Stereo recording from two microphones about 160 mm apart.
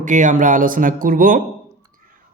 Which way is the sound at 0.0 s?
50° right (ahead or behind).